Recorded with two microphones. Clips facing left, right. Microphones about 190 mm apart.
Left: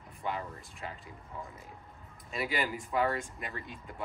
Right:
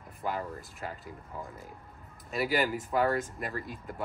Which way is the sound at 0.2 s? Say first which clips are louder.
Right 3 dB; centre (ahead or behind).